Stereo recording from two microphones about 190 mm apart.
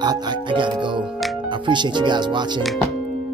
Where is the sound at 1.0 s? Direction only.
Centre (ahead or behind).